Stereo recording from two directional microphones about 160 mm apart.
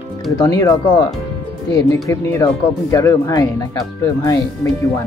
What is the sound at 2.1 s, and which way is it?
Speech, 20° left (ahead or behind).